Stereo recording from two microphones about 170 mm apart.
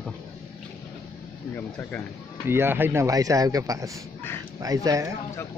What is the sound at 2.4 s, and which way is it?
Speech, 15° right (ahead or behind).